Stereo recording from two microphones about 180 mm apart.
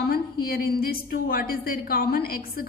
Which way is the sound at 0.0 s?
60° left (ahead or behind).